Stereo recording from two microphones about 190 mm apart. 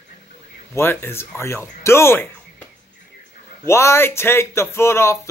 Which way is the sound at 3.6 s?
15° left (ahead or behind).